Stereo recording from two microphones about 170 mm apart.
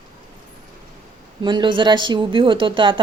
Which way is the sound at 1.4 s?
30° right (ahead or behind).